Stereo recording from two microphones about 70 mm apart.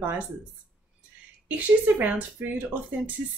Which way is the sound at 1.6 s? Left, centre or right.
Right.